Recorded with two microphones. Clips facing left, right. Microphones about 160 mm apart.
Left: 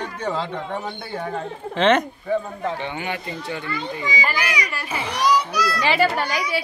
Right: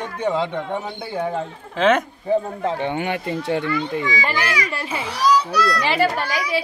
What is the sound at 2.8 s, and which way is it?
Speech, 55° right (ahead or behind).